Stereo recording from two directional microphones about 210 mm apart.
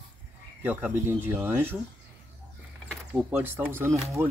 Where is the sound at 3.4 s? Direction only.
10° right (ahead or behind).